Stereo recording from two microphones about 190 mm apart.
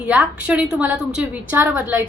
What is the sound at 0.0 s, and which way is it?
A woman's voice, 5° right (ahead or behind).